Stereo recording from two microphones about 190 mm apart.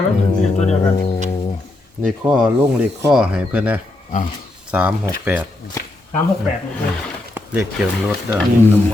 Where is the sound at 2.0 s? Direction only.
5° right (ahead or behind).